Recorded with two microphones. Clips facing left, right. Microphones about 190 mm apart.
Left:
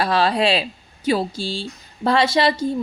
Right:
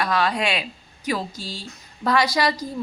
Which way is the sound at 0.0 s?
30° left (ahead or behind).